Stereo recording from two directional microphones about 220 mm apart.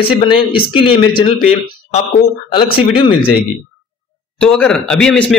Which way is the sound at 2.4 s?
20° left (ahead or behind).